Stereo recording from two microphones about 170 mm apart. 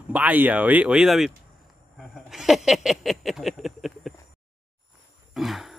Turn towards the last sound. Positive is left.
turn(degrees=0)  # may be behind; listen again after turning